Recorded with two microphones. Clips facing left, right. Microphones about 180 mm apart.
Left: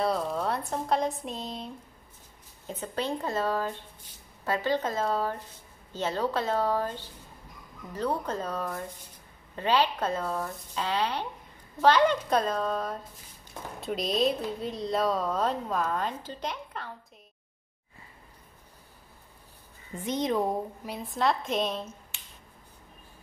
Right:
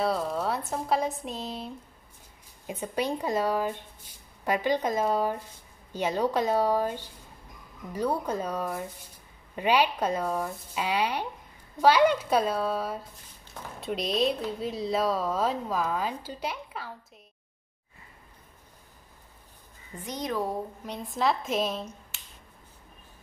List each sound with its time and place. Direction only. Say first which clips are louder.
0.0 s speech: even; centre (ahead or behind)
2.6 s speech: right 2 dB; 15° right (ahead or behind)
19.9 s speech: left 4 dB; 25° left (ahead or behind)
20.8 s speech: right 1 dB; 5° left (ahead or behind)